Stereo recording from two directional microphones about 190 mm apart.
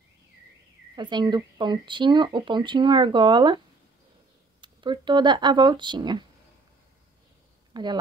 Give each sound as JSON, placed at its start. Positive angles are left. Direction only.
{"t": 0.9, "sound": "speech", "side_deg": -25}
{"t": 7.7, "sound": "speech", "side_deg": -20}